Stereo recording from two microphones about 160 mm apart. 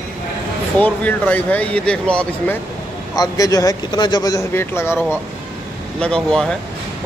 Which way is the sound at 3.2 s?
20° left (ahead or behind).